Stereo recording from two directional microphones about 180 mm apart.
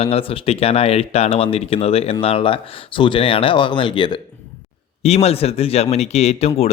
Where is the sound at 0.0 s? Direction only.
30° left (ahead or behind).